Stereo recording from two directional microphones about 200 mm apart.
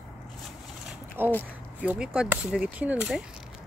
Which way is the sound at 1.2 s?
10° right (ahead or behind).